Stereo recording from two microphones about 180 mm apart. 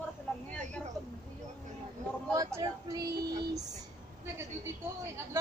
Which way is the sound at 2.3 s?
20° right (ahead or behind).